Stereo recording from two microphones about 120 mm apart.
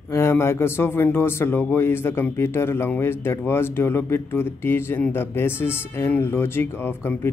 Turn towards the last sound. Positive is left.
turn(degrees=20)  # may be behind; listen again after turning